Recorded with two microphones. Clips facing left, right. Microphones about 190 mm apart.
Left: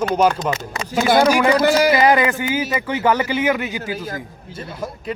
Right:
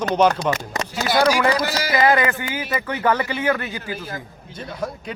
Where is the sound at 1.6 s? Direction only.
55° left (ahead or behind).